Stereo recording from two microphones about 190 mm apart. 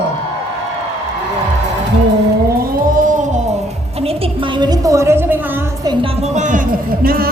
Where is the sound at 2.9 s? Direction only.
40° right (ahead or behind).